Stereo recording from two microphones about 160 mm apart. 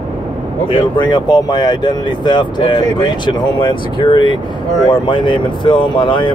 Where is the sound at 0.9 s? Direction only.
25° left (ahead or behind).